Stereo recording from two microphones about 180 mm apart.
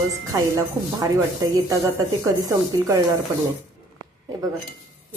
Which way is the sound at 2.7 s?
20° right (ahead or behind).